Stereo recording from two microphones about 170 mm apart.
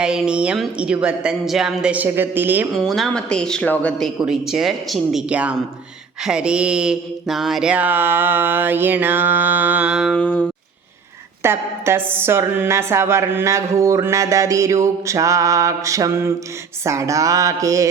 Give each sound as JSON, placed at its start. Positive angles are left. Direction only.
{"t": 0.0, "sound": "speech", "side_deg": -5}
{"t": 2.7, "sound": "speech", "side_deg": 0}
{"t": 6.2, "sound": "mantra", "side_deg": -5}
{"t": 11.4, "sound": "mantra", "side_deg": -15}
{"t": 16.8, "sound": "a sound", "side_deg": -15}